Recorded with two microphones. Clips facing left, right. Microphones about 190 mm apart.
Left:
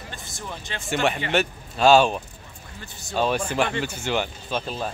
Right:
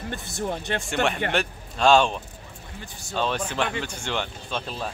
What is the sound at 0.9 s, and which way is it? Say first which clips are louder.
Speech: left 3 dB; 5° left (ahead or behind).